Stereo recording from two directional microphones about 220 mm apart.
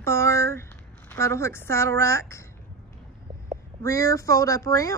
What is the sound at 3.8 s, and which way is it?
A woman's voice, 15° left (ahead or behind).